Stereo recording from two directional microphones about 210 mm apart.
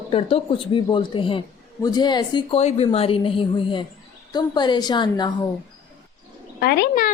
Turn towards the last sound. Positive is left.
turn(degrees=45)  # may be behind; listen again after turning